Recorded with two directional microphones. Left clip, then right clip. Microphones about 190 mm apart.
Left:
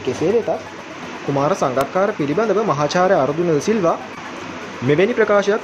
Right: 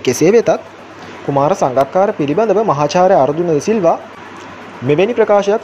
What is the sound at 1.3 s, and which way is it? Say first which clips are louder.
Speech: right 5 dB; 20° right (ahead or behind).